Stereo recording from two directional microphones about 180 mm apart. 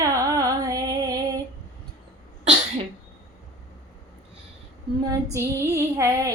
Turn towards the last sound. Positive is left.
turn(degrees=-15)  # may be behind; listen again after turning